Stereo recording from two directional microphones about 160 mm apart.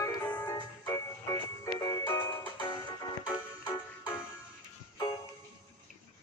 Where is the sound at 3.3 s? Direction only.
20° left (ahead or behind).